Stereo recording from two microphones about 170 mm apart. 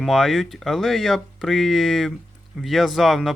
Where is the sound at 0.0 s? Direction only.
Centre (ahead or behind).